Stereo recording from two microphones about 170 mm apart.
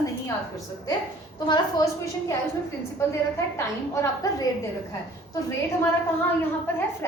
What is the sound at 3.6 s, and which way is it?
Speech, 15° left (ahead or behind).